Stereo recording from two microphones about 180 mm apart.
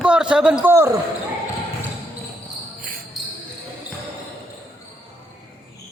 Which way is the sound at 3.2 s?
Centre (ahead or behind).